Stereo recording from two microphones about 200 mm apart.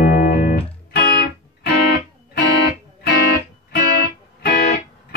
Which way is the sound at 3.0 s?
55° left (ahead or behind).